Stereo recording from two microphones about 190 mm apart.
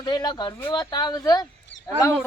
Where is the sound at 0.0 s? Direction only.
20° left (ahead or behind).